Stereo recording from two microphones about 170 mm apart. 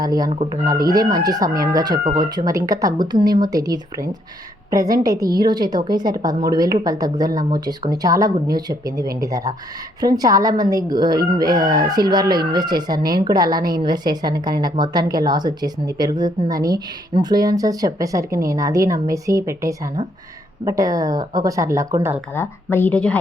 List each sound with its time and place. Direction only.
0.0 s speech: 20° right (ahead or behind)
22.4 s a woman's voice: 10° left (ahead or behind)